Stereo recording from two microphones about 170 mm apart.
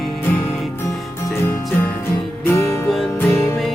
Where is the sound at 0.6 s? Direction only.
Centre (ahead or behind).